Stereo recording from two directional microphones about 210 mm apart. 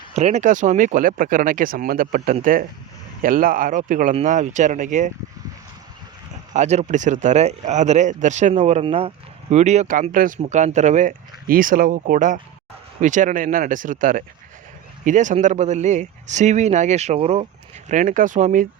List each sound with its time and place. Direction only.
0.1 s speech: 30° right (ahead or behind)
6.5 s speech: 35° right (ahead or behind)